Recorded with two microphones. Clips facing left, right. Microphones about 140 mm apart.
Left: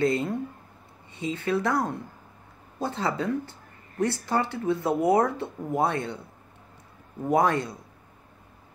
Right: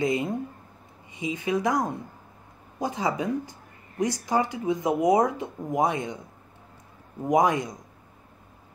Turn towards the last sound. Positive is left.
turn(degrees=-15)  # may be behind; listen again after turning